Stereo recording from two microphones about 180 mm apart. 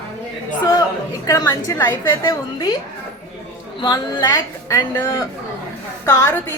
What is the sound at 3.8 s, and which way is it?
A woman's voice, 20° left (ahead or behind).